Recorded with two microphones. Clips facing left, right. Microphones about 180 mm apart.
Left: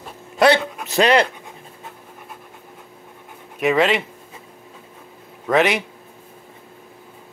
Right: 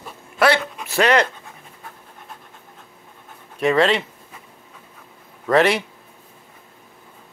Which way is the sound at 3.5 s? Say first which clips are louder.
Even; 5° left (ahead or behind).